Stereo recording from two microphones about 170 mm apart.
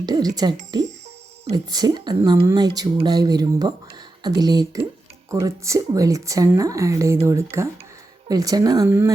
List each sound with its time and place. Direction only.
0.0 s speech: 25° right (ahead or behind)